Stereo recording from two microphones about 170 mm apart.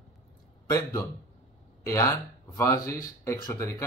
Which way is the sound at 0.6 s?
20° left (ahead or behind).